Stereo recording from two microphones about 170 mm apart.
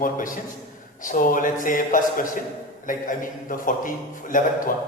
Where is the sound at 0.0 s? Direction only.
50° left (ahead or behind).